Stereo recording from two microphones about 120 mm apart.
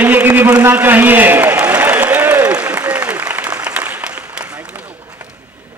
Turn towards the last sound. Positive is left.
turn(degrees=-10)  # may be behind; listen again after turning